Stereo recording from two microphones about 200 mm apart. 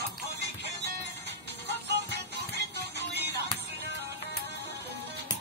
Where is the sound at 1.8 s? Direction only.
60° right (ahead or behind).